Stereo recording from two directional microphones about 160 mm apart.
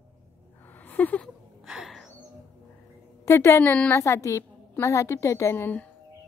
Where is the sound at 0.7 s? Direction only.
10° left (ahead or behind).